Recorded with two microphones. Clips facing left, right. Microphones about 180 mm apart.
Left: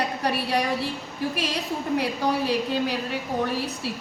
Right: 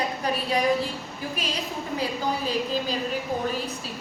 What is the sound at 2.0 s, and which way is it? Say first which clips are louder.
A woman's voice: right 1 dB; 70° left (ahead or behind).